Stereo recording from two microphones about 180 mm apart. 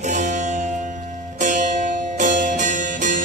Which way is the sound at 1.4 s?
45° right (ahead or behind).